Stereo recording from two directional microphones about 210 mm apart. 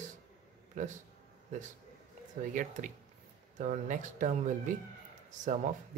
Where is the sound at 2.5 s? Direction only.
35° right (ahead or behind).